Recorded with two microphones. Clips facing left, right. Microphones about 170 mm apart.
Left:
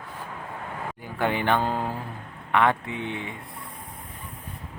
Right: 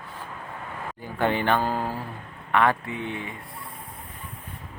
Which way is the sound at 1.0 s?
10° left (ahead or behind).